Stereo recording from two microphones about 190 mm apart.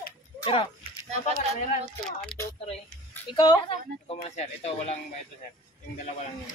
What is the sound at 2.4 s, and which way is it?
Speech, 15° left (ahead or behind).